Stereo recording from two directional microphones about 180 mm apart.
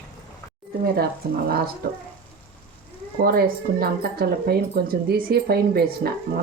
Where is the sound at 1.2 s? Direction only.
60° right (ahead or behind).